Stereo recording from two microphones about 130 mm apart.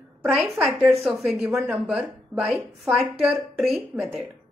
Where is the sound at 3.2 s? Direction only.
Centre (ahead or behind).